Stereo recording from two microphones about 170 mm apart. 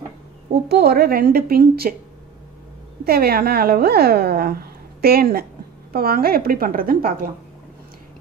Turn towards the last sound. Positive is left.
turn(degrees=-60)  # may be behind; listen again after turning